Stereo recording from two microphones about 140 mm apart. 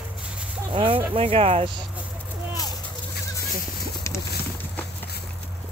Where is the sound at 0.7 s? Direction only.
40° right (ahead or behind).